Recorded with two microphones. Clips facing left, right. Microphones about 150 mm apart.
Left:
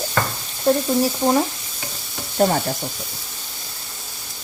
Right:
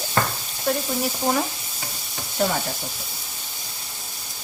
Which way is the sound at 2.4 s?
45° left (ahead or behind).